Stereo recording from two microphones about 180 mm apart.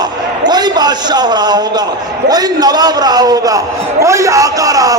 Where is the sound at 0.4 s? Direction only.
25° right (ahead or behind).